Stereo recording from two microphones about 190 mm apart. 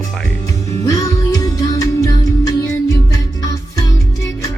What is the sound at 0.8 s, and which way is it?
Music, 15° left (ahead or behind).